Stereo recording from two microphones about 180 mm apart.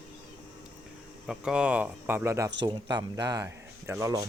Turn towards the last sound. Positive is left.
turn(degrees=-15)  # may be behind; listen again after turning